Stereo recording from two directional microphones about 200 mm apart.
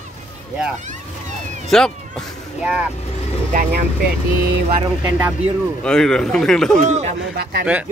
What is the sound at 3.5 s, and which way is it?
Speech, 40° right (ahead or behind).